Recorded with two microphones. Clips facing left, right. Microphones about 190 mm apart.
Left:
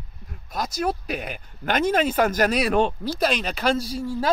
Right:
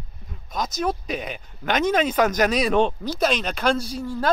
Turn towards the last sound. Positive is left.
turn(degrees=5)  # may be behind; listen again after turning